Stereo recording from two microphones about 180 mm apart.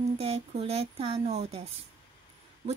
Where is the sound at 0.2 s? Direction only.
35° right (ahead or behind).